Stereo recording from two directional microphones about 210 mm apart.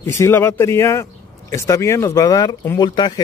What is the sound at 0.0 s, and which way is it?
Speech, 10° left (ahead or behind).